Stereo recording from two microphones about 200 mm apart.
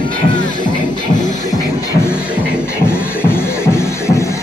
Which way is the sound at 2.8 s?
10° left (ahead or behind).